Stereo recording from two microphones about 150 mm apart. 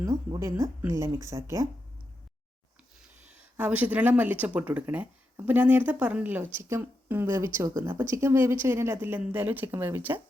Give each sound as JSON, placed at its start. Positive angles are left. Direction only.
{"t": 0.3, "sound": "speech", "side_deg": -20}
{"t": 3.6, "sound": "speech", "side_deg": -10}